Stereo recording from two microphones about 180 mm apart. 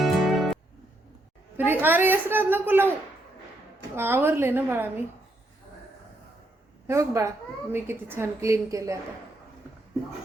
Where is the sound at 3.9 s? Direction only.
15° right (ahead or behind).